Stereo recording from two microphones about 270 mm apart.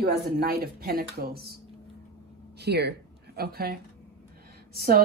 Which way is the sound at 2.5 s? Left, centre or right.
Right.